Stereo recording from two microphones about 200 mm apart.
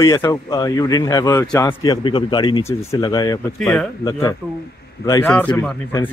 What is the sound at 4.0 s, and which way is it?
A man's voice, 15° left (ahead or behind).